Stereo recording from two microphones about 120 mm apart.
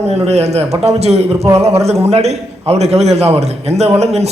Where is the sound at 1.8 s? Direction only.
60° right (ahead or behind).